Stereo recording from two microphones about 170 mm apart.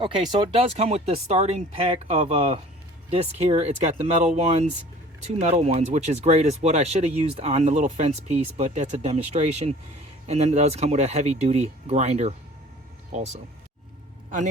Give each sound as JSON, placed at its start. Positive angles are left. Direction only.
{"t": 0.0, "sound": "a man's voice", "side_deg": -30}